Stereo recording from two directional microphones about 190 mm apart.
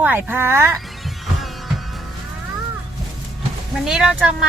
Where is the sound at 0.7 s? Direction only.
Centre (ahead or behind).